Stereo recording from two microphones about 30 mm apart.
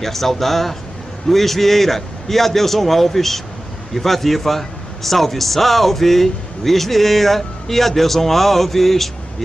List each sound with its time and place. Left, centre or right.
0.0 s a man's voice: centre